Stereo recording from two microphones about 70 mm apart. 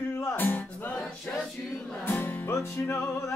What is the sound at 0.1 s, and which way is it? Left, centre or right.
Music, left.